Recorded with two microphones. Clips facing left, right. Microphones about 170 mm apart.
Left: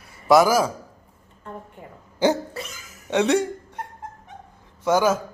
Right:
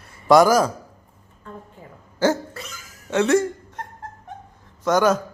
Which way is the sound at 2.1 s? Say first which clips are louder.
Even; 15° left (ahead or behind).